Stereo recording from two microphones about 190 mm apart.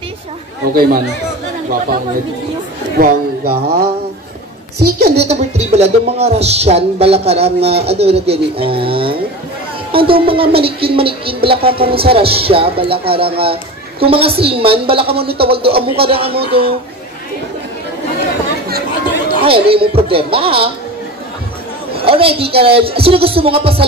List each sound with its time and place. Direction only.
0.7 s speech: 50° right (ahead or behind)
3.0 s a sound: 55° right (ahead or behind)
5.3 s a woman's voice: 35° right (ahead or behind)
19.4 s a woman's voice: 30° right (ahead or behind)
21.9 s a woman's voice: 30° right (ahead or behind)